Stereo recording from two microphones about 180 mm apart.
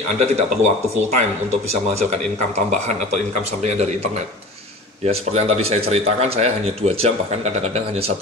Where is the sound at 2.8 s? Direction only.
40° right (ahead or behind).